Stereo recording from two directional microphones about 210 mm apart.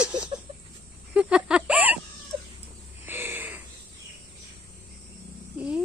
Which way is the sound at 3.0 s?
10° right (ahead or behind).